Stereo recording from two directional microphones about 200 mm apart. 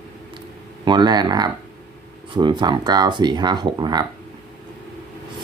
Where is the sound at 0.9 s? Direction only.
20° right (ahead or behind).